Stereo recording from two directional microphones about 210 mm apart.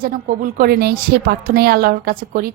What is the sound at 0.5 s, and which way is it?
A woman's voice, 45° right (ahead or behind).